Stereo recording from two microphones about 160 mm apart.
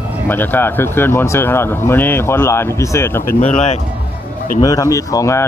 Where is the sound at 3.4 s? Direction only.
45° left (ahead or behind).